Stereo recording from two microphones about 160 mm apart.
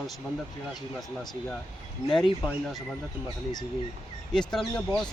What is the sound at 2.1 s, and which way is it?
Speech, 5° left (ahead or behind).